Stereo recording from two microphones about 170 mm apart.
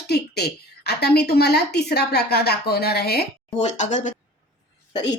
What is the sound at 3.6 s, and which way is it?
Speech, 45° left (ahead or behind).